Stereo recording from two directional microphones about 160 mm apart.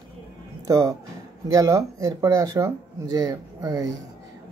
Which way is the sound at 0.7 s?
20° right (ahead or behind).